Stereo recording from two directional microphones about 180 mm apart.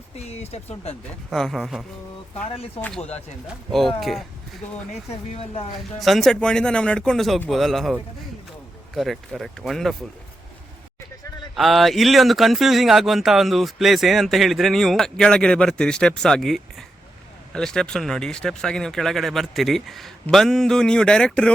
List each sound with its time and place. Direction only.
0.2 s speech: 35° left (ahead or behind)
1.3 s speech: centre (ahead or behind)
2.3 s speech: 30° left (ahead or behind)
3.4 s speech: centre (ahead or behind)
6.0 s speech: centre (ahead or behind)
9.0 s speech: centre (ahead or behind)
11.5 s speech: centre (ahead or behind)